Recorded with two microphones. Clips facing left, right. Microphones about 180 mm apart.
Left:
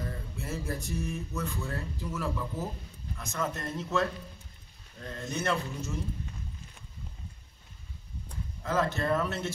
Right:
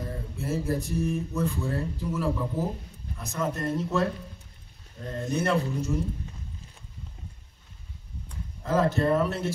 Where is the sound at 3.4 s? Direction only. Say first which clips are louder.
Right 6 dB; 10° right (ahead or behind).